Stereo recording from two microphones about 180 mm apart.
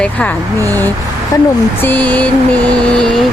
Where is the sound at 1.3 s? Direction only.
20° left (ahead or behind).